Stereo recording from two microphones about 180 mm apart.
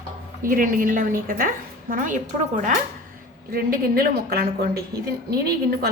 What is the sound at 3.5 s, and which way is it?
A woman's voice, 55° right (ahead or behind).